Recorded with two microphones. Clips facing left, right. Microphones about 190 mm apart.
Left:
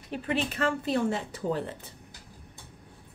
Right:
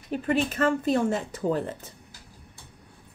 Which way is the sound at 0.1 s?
45° right (ahead or behind).